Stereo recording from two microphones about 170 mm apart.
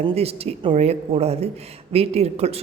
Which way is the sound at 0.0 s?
35° right (ahead or behind).